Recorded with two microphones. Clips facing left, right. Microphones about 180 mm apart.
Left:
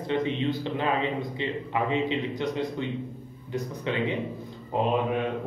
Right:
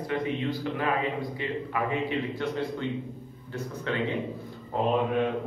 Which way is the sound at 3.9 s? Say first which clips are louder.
Left 1 dB; 15° left (ahead or behind).